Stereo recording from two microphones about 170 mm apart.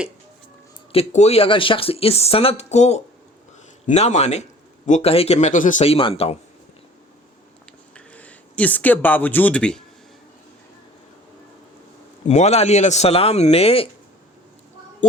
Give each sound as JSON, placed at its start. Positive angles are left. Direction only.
{"t": 0.9, "sound": "speech", "side_deg": 40}
{"t": 7.9, "sound": "speech", "side_deg": 10}
{"t": 12.3, "sound": "speech", "side_deg": 40}